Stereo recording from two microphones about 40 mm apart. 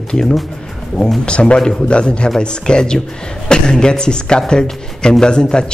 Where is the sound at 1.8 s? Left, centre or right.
Left.